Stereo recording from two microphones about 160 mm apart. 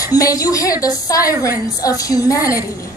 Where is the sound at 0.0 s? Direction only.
20° left (ahead or behind).